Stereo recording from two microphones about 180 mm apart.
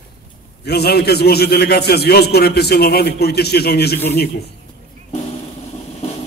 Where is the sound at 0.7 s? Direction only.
65° left (ahead or behind).